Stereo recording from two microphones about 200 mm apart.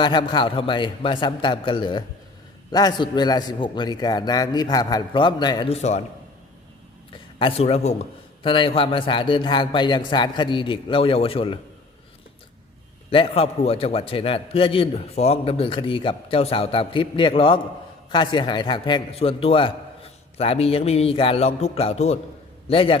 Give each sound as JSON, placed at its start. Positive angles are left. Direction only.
{"t": 0.0, "sound": "a man's voice", "side_deg": 25}
{"t": 7.1, "sound": "a man's voice", "side_deg": 25}
{"t": 13.1, "sound": "a man's voice", "side_deg": 25}